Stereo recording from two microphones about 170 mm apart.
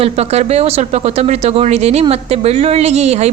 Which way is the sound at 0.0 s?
40° right (ahead or behind).